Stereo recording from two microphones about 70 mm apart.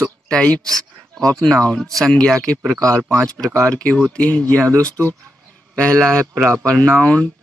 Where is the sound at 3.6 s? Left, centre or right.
Centre.